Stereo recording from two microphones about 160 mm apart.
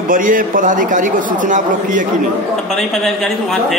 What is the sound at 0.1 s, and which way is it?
A man's voice, 60° right (ahead or behind).